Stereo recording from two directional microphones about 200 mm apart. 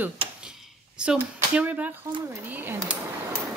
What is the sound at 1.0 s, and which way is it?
Speech, 5° right (ahead or behind).